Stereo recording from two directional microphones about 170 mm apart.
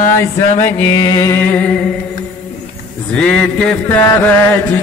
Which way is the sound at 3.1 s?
5° left (ahead or behind).